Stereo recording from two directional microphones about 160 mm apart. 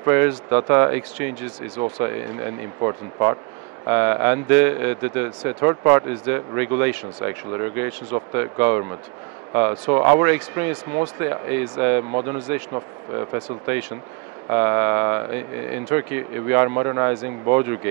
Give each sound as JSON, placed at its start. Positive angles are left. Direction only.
{"t": 0.0, "sound": "a man's voice", "side_deg": -15}
{"t": 12.1, "sound": "a man's voice", "side_deg": -25}